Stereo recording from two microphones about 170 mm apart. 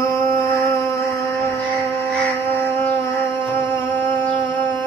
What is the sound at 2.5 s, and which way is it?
Music, 10° left (ahead or behind).